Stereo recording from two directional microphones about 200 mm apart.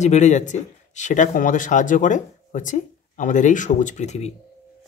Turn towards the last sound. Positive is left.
turn(degrees=35)  # may be behind; listen again after turning